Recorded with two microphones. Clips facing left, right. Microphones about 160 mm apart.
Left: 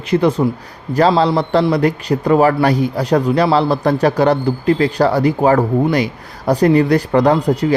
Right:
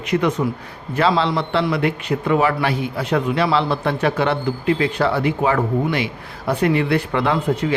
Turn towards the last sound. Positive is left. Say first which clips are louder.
# left 6 dB
turn(degrees=40)  # may be behind; listen again after turning